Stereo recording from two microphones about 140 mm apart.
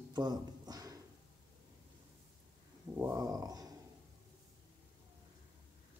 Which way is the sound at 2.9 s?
20° right (ahead or behind).